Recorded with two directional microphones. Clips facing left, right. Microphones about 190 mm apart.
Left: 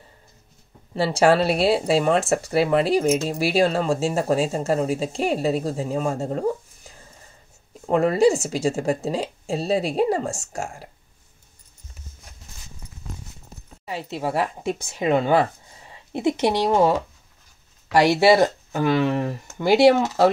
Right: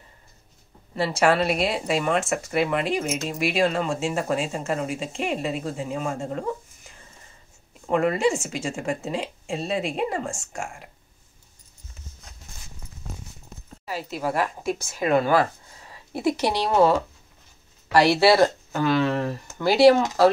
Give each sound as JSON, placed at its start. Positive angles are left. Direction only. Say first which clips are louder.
{"t": 0.9, "sound": "speech", "louder": "left 3 dB", "side_deg": 30}
{"t": 7.9, "sound": "speech", "louder": "left 4 dB", "side_deg": 35}
{"t": 13.8, "sound": "speech", "louder": "left 1 dB", "side_deg": 25}